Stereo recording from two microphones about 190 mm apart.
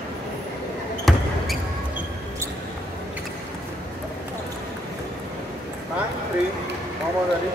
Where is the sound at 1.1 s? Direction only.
Centre (ahead or behind).